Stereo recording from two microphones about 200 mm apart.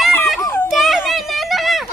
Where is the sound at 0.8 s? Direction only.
Centre (ahead or behind).